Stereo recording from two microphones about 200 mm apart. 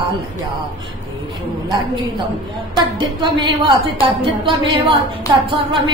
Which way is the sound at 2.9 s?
25° right (ahead or behind).